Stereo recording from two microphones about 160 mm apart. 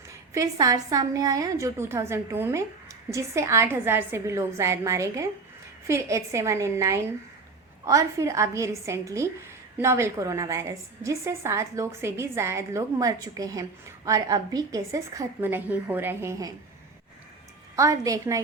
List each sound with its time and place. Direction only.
0.1 s a woman's voice: 20° right (ahead or behind)
17.7 s a woman's voice: 20° right (ahead or behind)